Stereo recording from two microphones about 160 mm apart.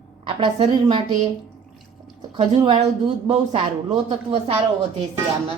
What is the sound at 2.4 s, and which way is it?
Speech, 40° right (ahead or behind).